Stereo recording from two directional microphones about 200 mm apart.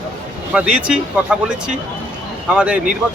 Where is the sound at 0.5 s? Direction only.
5° right (ahead or behind).